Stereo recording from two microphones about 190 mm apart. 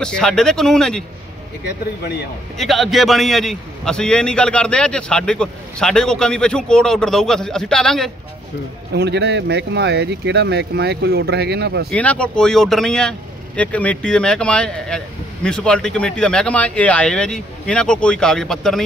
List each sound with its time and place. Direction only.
0.0 s a man's voice: 5° left (ahead or behind)
2.5 s a man's voice: centre (ahead or behind)
8.9 s speech: 60° right (ahead or behind)
11.9 s a man's voice: 5° left (ahead or behind)